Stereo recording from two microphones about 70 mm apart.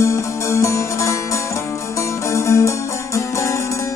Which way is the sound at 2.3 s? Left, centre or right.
Left.